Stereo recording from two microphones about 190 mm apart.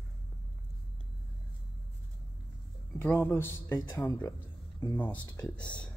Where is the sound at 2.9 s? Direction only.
10° left (ahead or behind).